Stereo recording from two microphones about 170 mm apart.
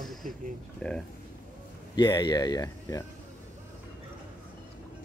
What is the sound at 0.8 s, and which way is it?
Speech, 5° left (ahead or behind).